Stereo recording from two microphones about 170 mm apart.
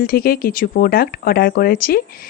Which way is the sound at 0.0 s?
60° left (ahead or behind).